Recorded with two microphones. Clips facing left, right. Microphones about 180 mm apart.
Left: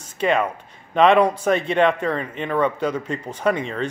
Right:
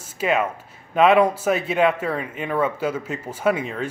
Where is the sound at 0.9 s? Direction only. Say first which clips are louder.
Left 1 dB; 5° right (ahead or behind).